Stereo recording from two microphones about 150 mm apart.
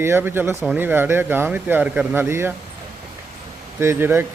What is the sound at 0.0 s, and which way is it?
Speech, 15° right (ahead or behind).